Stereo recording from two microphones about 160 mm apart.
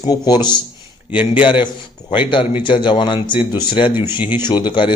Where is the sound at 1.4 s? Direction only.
30° left (ahead or behind).